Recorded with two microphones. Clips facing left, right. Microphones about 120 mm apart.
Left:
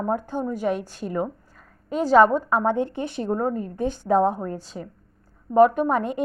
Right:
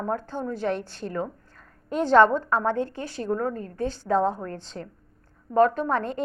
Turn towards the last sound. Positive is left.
turn(degrees=15)  # may be behind; listen again after turning